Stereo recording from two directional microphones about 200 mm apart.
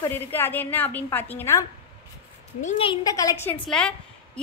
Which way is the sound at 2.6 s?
35° left (ahead or behind).